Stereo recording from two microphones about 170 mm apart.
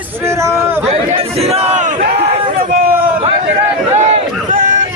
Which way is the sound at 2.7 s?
60° right (ahead or behind).